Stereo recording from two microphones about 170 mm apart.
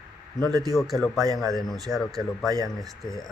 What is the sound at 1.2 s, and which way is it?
Speech, 20° right (ahead or behind).